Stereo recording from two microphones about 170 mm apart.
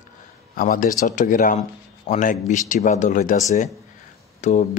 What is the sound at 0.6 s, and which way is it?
A man's voice, 55° left (ahead or behind).